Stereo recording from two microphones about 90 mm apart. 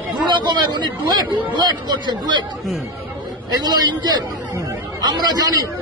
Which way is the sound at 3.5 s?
50° right (ahead or behind).